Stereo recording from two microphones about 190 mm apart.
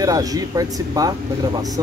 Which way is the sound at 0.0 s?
20° right (ahead or behind).